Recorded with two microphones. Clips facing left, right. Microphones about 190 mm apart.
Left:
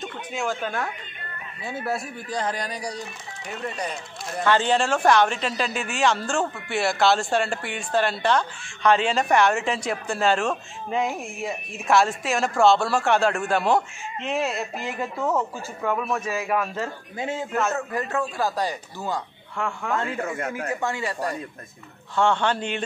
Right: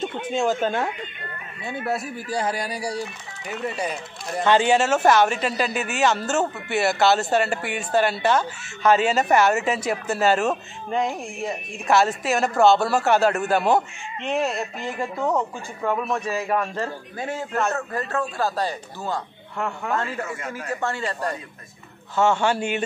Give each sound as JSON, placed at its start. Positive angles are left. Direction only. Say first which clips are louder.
{"t": 0.1, "sound": "a woman's voice", "louder": "right 6 dB", "side_deg": -25}
{"t": 1.7, "sound": "a man's voice", "louder": "right 2 dB", "side_deg": 0}
{"t": 4.4, "sound": "speech", "louder": "right 3 dB", "side_deg": -15}
{"t": 17.2, "sound": "a man's voice", "louder": "even", "side_deg": 20}
{"t": 19.5, "sound": "speech", "louder": "right 1 dB", "side_deg": -5}
{"t": 20.2, "sound": "speech", "louder": "left 3 dB", "side_deg": 55}
{"t": 20.5, "sound": "speech", "louder": "even", "side_deg": 15}
{"t": 22.1, "sound": "a man's voice", "louder": "right 2 dB", "side_deg": -5}